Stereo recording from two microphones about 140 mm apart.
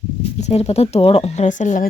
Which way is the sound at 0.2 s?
50° left (ahead or behind).